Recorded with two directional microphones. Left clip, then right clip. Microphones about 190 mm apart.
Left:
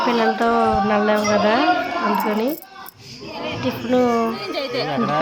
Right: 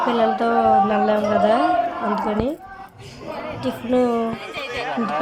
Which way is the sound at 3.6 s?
5° left (ahead or behind).